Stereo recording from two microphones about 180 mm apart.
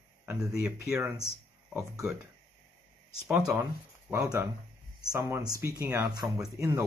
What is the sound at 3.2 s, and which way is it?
Speech, 5° right (ahead or behind).